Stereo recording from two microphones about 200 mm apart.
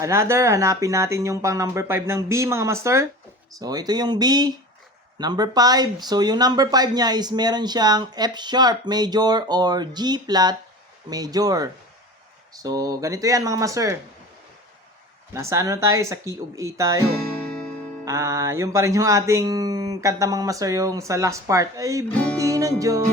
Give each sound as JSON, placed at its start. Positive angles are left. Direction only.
{"t": 0.0, "sound": "speech", "side_deg": -15}
{"t": 15.3, "sound": "speech", "side_deg": -15}
{"t": 17.4, "sound": "music", "side_deg": 5}
{"t": 18.0, "sound": "speech", "side_deg": -15}